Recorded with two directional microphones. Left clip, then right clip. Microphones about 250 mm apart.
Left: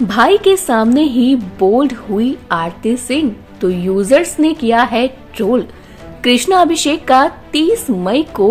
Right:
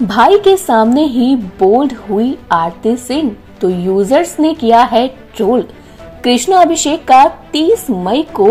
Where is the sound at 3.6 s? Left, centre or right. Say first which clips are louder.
Right 3 dB; centre.